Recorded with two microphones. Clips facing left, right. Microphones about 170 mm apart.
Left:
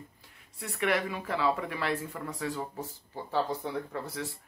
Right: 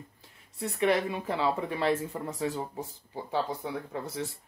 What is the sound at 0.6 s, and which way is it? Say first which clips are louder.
Speech: right 3 dB; 25° right (ahead or behind).